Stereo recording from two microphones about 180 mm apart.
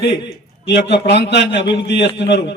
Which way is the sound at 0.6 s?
70° left (ahead or behind).